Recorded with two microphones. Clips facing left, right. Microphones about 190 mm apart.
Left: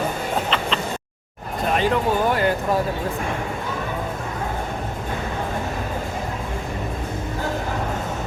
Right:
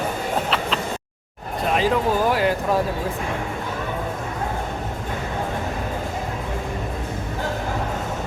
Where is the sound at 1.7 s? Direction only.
Centre (ahead or behind).